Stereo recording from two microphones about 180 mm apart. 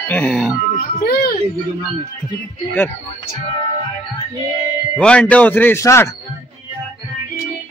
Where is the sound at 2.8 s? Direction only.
10° left (ahead or behind).